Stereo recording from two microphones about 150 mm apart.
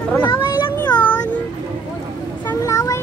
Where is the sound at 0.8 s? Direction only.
10° left (ahead or behind).